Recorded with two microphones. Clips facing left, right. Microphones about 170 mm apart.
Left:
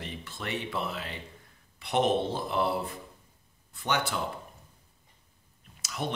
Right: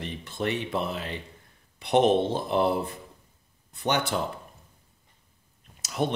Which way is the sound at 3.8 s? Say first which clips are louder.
Right 4 dB; 20° right (ahead or behind).